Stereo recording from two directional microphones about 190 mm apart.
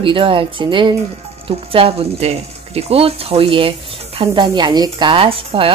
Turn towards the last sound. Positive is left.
turn(degrees=-30)  # may be behind; listen again after turning